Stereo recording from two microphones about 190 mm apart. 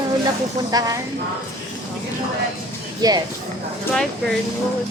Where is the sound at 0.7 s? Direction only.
20° right (ahead or behind).